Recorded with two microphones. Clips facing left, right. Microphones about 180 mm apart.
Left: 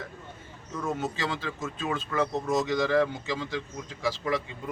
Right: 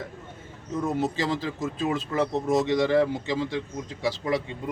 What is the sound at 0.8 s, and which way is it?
A man's voice, 35° right (ahead or behind).